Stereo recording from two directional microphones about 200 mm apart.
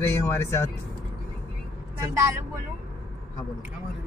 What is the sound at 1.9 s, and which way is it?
Speech, 15° right (ahead or behind).